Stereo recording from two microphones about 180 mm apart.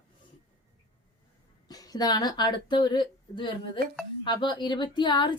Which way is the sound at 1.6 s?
20° left (ahead or behind).